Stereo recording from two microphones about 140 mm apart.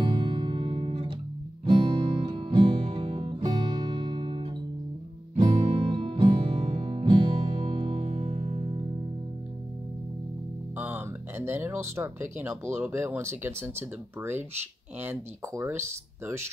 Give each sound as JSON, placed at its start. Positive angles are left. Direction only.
{"t": 0.0, "sound": "music", "side_deg": -35}
{"t": 10.8, "sound": "speech", "side_deg": -15}